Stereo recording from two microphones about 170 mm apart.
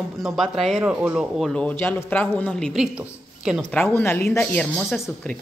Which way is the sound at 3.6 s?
10° left (ahead or behind).